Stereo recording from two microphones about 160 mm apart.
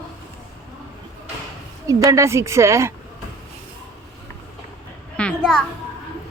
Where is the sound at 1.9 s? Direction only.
20° right (ahead or behind).